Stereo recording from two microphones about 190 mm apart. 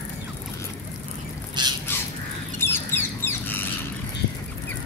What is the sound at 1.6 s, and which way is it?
Bird, 20° right (ahead or behind).